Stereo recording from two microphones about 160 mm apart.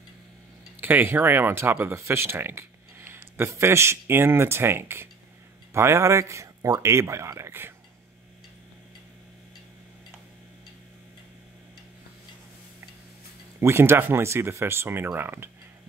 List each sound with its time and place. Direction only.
0.7 s speech: 10° right (ahead or behind)
13.6 s speech: 15° right (ahead or behind)